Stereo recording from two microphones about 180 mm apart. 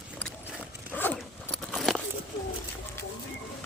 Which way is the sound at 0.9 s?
10° left (ahead or behind).